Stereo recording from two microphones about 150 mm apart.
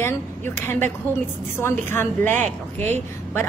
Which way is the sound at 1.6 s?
15° left (ahead or behind).